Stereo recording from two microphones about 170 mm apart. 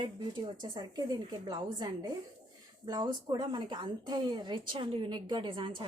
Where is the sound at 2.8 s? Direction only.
25° right (ahead or behind).